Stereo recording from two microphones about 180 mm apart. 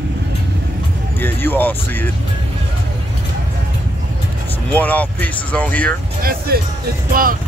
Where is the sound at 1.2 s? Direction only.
10° left (ahead or behind).